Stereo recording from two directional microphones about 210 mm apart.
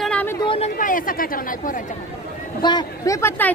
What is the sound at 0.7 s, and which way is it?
Speech, 40° left (ahead or behind).